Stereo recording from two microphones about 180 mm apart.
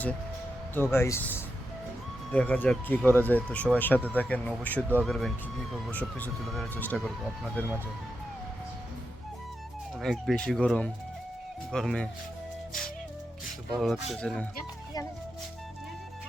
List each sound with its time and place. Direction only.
0.7 s speech: 15° left (ahead or behind)
10.0 s speech: centre (ahead or behind)
13.7 s speech: centre (ahead or behind)